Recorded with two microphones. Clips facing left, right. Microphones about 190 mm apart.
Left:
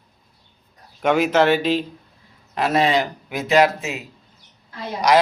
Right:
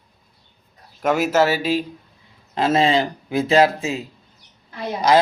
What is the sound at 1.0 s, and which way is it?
Speech, 5° right (ahead or behind).